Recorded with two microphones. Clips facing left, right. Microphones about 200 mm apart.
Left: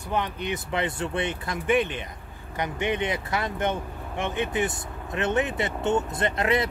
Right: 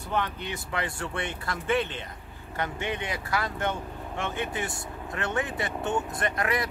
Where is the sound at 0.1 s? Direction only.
15° left (ahead or behind).